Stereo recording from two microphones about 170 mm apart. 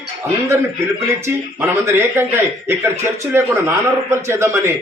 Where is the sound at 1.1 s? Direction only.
15° right (ahead or behind).